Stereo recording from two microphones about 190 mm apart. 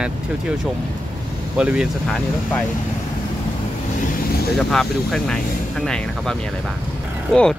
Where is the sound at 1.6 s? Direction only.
5° right (ahead or behind).